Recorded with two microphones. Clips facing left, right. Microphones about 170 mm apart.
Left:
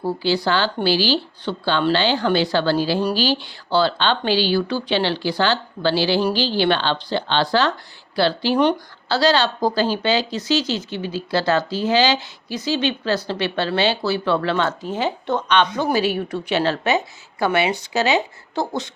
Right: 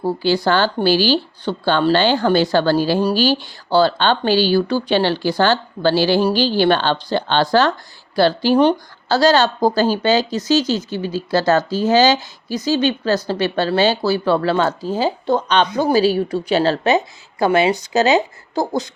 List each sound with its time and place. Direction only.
0.0 s speech: 50° right (ahead or behind)